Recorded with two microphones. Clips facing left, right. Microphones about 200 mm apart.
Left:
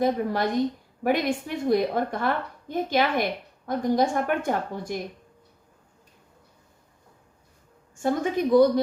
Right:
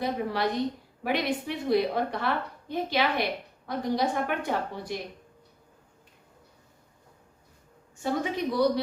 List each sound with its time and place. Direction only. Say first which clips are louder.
0.0 s a woman's voice: left 4 dB; 45° left (ahead or behind)
7.9 s a woman's voice: left 4 dB; 50° left (ahead or behind)